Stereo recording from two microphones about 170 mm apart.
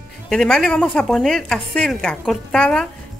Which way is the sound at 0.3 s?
5° left (ahead or behind).